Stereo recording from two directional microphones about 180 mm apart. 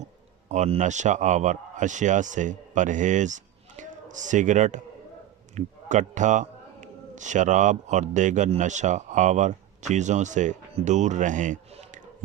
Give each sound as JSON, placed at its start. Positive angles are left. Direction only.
{"t": 0.4, "sound": "a man's voice", "side_deg": -40}